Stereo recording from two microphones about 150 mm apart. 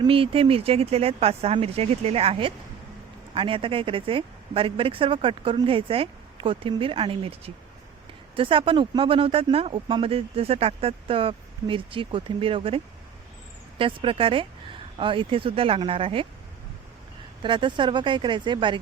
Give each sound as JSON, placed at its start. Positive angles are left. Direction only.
{"t": 0.0, "sound": "speech", "side_deg": -35}
{"t": 17.4, "sound": "speech", "side_deg": -35}